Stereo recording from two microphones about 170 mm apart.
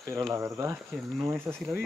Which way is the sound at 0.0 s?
15° right (ahead or behind).